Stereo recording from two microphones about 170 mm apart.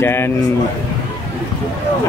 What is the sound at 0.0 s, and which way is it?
Speech, 15° left (ahead or behind).